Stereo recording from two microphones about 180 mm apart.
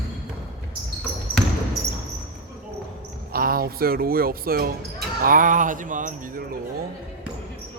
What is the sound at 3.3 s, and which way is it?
Speech, 55° right (ahead or behind).